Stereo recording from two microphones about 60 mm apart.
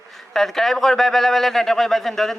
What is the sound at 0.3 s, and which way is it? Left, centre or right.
A man's voice, centre.